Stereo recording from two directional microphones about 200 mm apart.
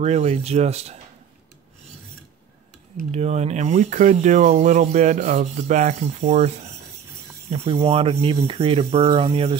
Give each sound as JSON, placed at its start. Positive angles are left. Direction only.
{"t": 0.0, "sound": "speech", "side_deg": -35}
{"t": 3.1, "sound": "speech", "side_deg": -35}